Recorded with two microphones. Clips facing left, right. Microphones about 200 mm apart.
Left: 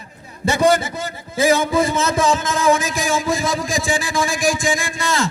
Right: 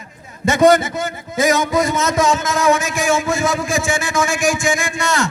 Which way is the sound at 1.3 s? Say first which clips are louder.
Even; 30° left (ahead or behind).